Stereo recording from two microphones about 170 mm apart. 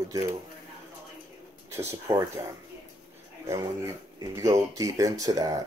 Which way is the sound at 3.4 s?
20° right (ahead or behind).